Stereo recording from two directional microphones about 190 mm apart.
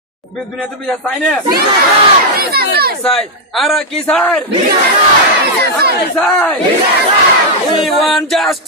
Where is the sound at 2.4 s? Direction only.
55° right (ahead or behind).